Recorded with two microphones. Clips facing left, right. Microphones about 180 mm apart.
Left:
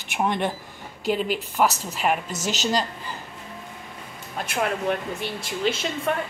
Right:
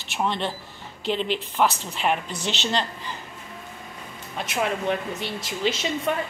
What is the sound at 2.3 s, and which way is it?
Speech, 40° left (ahead or behind).